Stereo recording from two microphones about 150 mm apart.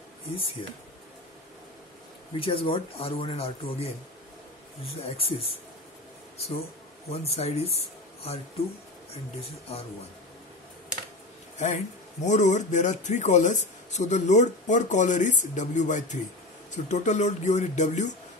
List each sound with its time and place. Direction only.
2.3 s speech: 35° left (ahead or behind)
4.9 s speech: 40° left (ahead or behind)
11.5 s speech: 50° left (ahead or behind)